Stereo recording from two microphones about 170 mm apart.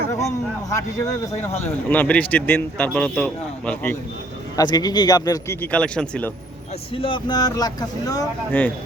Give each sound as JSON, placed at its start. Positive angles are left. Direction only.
{"t": 0.1, "sound": "a man's voice", "side_deg": 20}
{"t": 4.5, "sound": "speech", "side_deg": 25}
{"t": 5.7, "sound": "a man's voice", "side_deg": 5}
{"t": 6.9, "sound": "speech", "side_deg": 30}